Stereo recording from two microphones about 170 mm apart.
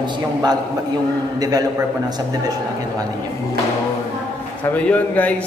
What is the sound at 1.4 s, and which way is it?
Speech, 20° right (ahead or behind).